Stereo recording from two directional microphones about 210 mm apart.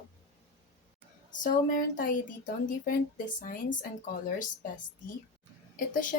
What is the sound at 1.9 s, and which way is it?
Speech, 40° left (ahead or behind).